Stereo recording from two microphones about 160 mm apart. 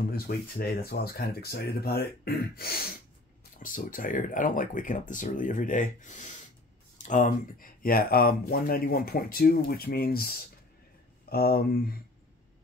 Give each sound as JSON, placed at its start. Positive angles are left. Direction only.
{"t": 0.1, "sound": "speech", "side_deg": 75}
{"t": 3.5, "sound": "speech", "side_deg": 60}